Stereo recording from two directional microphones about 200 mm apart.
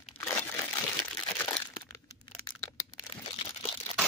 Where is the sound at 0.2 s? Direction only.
10° left (ahead or behind); by 3.9 s 30° left (ahead or behind).